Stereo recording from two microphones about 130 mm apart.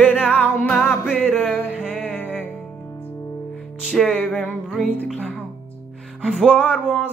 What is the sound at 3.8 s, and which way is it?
Music, 5° left (ahead or behind).